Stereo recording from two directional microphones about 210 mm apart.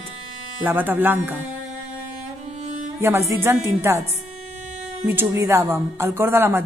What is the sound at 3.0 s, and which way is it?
Speech, 15° right (ahead or behind).